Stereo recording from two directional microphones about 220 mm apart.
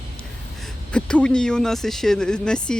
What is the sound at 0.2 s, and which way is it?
Speech, 5° left (ahead or behind).